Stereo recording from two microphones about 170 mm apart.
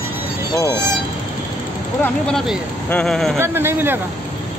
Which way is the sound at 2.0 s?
5° left (ahead or behind).